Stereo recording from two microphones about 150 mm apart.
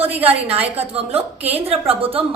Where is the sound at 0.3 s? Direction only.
40° right (ahead or behind).